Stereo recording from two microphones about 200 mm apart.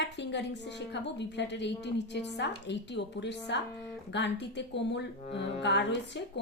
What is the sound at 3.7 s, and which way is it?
Speech, 5° left (ahead or behind).